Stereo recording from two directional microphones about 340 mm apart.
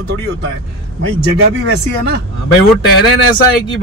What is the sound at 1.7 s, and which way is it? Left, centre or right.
Speech, right.